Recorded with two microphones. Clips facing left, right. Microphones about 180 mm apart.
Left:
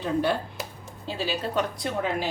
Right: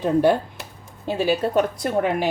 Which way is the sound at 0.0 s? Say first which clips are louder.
Right 7 dB; 50° right (ahead or behind).